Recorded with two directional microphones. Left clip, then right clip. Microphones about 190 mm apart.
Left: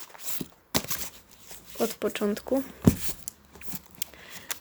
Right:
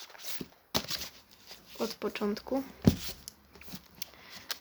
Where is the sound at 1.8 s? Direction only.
10° left (ahead or behind).